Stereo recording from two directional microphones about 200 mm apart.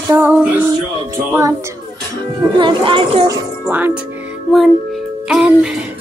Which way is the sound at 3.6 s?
10° right (ahead or behind).